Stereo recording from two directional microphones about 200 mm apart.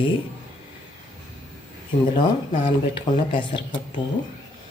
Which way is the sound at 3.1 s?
20° left (ahead or behind).